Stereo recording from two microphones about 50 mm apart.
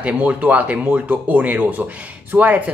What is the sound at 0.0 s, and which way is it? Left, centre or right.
Speech, right.